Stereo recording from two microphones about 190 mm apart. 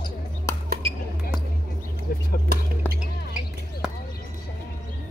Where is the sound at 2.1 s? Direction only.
50° left (ahead or behind).